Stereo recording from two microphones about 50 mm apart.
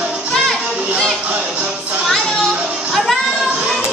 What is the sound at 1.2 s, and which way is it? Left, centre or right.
Music, right.